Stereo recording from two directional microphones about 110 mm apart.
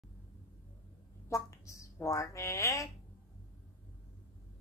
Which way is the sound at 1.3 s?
25° left (ahead or behind).